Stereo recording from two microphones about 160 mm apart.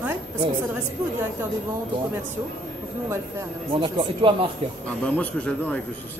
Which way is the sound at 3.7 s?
35° right (ahead or behind).